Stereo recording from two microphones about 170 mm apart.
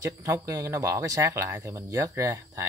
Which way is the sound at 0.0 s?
15° right (ahead or behind).